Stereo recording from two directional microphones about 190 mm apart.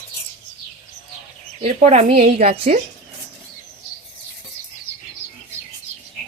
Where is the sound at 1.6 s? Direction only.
35° right (ahead or behind).